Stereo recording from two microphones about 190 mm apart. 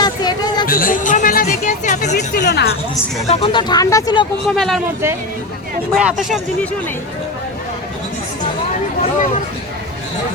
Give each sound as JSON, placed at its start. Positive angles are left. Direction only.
{"t": 0.0, "sound": "hubbub", "side_deg": 20}
{"t": 0.7, "sound": "speech", "side_deg": 45}
{"t": 2.1, "sound": "speech", "side_deg": 60}
{"t": 3.2, "sound": "speech", "side_deg": 30}
{"t": 4.4, "sound": "speech", "side_deg": 0}
{"t": 5.9, "sound": "speech", "side_deg": -5}